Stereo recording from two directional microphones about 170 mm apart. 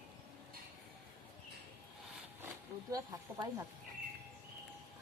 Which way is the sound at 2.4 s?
20° right (ahead or behind).